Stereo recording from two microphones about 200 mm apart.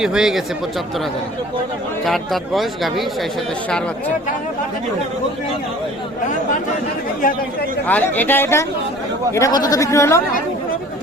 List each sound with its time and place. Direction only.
0.0 s speech: 5° right (ahead or behind)
2.0 s speech: centre (ahead or behind)
7.9 s speech: 10° left (ahead or behind)